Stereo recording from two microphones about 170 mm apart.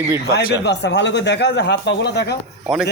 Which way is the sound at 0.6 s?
90° left.